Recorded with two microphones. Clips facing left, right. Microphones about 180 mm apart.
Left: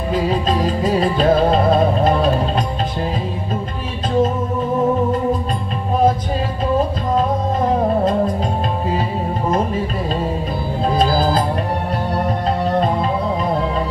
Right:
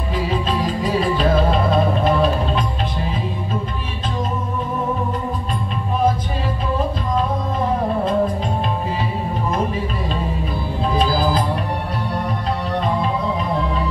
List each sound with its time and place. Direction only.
0.1 s music: 40° left (ahead or behind)
11.0 s music: 40° left (ahead or behind)